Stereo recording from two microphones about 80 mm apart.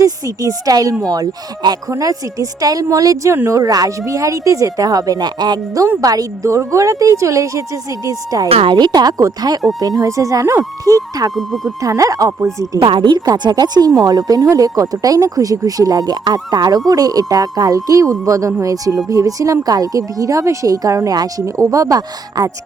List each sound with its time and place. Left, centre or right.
0.0 s speech: right
6.0 s speech: right
8.6 s speech: right
11.3 s speech: centre
11.8 s speech: right
12.8 s speech: right
13.2 s speech: right